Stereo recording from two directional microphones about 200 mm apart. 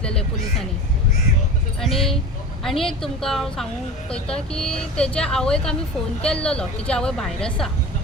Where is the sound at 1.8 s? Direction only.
Centre (ahead or behind).